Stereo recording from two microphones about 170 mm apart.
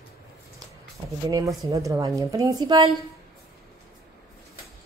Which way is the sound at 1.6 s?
20° right (ahead or behind).